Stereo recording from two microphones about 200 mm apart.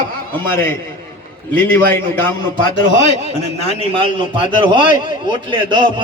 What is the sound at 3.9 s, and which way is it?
A man's voice, 25° right (ahead or behind).